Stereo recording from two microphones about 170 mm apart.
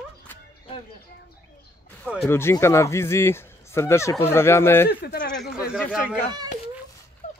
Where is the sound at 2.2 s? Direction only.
15° left (ahead or behind).